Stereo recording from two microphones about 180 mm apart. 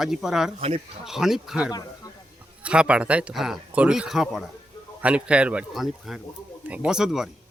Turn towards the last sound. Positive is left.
turn(degrees=0)  # may be behind; listen again after turning